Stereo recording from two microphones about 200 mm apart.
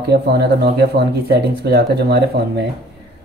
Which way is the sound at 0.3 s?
55° right (ahead or behind).